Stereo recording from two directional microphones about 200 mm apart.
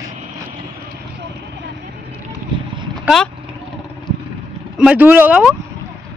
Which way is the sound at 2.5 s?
20° right (ahead or behind).